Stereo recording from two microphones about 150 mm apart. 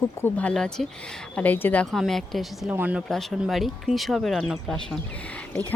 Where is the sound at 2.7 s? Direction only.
10° right (ahead or behind).